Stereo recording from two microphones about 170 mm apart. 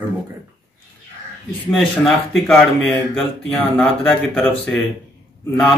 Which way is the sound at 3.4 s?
10° left (ahead or behind).